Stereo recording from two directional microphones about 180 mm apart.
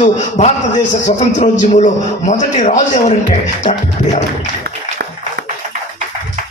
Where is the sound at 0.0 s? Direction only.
40° left (ahead or behind).